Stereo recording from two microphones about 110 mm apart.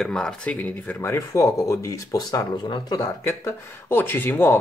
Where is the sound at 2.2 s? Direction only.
40° left (ahead or behind).